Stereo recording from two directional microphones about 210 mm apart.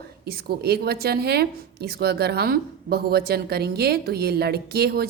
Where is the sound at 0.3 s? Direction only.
50° right (ahead or behind).